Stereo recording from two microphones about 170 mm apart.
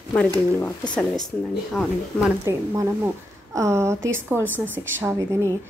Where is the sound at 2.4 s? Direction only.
20° right (ahead or behind).